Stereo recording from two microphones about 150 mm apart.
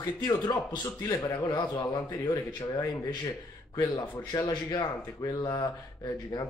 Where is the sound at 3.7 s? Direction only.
25° left (ahead or behind).